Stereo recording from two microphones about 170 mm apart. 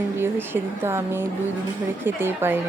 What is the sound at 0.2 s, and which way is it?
Speech, 15° right (ahead or behind).